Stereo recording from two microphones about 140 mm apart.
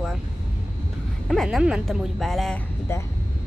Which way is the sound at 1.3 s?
Centre (ahead or behind).